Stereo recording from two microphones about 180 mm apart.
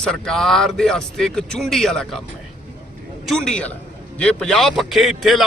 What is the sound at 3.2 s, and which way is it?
A man's voice, 5° left (ahead or behind).